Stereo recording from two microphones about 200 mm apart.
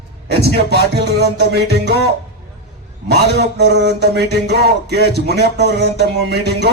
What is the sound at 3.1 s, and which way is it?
Music, 55° right (ahead or behind).